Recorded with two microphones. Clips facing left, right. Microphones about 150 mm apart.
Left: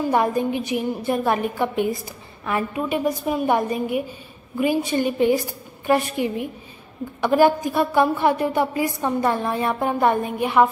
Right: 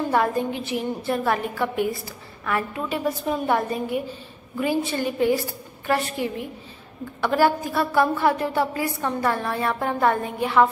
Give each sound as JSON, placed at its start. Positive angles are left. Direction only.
{"t": 0.1, "sound": "a woman's voice", "side_deg": 15}